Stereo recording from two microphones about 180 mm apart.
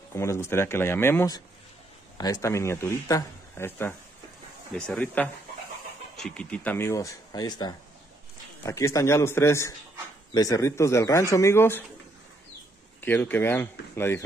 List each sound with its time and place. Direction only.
0.1 s a man's voice: 15° left (ahead or behind)
13.0 s speech: 10° left (ahead or behind)